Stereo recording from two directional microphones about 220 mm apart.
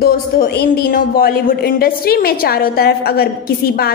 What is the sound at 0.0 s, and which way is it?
A woman's voice, 45° left (ahead or behind).